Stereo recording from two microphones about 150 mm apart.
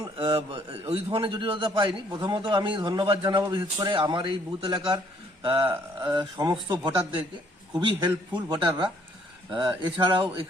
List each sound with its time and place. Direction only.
0.0 s a man's voice: 35° right (ahead or behind)
5.7 s speech: 15° right (ahead or behind)
6.1 s a man's voice: 30° right (ahead or behind)